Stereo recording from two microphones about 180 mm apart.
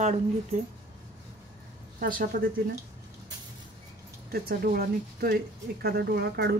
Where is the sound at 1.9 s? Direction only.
50° right (ahead or behind).